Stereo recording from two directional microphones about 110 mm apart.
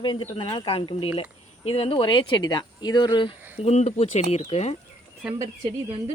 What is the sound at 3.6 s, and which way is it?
Speech, 80° left.